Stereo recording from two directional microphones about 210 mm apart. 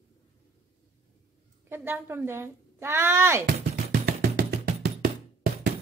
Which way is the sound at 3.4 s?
50° right (ahead or behind).